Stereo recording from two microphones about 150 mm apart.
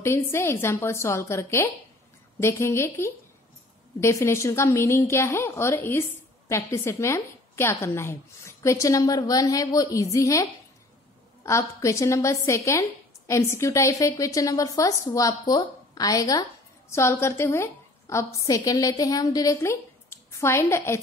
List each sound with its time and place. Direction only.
0.0 s a woman's voice: 15° left (ahead or behind)